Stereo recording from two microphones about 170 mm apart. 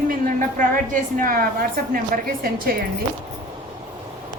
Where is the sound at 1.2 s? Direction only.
55° right (ahead or behind).